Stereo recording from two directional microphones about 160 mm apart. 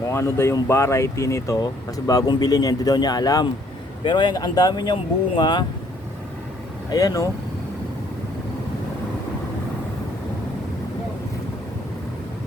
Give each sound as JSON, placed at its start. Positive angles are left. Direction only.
{"t": 0.0, "sound": "speech", "side_deg": 15}
{"t": 6.9, "sound": "speech", "side_deg": 20}